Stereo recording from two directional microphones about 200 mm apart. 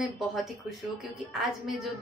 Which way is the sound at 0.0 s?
Centre (ahead or behind).